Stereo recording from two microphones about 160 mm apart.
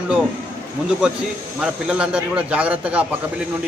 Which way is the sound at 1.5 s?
5° right (ahead or behind).